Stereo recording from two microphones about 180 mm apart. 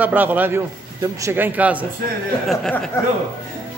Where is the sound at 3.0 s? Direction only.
15° left (ahead or behind).